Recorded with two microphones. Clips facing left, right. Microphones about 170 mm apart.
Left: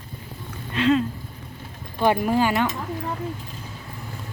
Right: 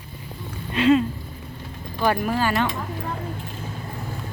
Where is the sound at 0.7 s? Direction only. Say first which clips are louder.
Right 2 dB; 10° right (ahead or behind).